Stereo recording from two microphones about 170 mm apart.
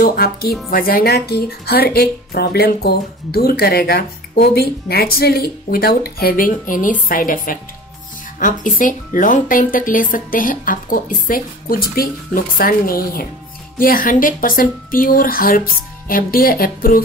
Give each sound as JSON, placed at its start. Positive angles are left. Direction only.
{"t": 0.0, "sound": "a woman's voice", "side_deg": 60}